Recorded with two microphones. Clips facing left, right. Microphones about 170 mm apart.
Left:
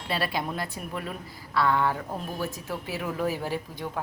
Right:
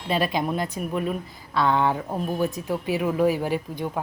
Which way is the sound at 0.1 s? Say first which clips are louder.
Right 6 dB; 20° right (ahead or behind).